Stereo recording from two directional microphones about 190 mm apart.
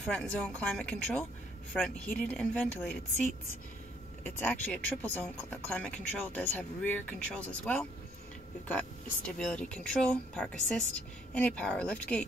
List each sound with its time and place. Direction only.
0.0 s speech: 5° left (ahead or behind)
4.2 s speech: 10° left (ahead or behind)